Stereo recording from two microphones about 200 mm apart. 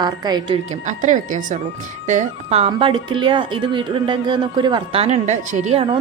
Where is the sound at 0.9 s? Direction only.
40° right (ahead or behind).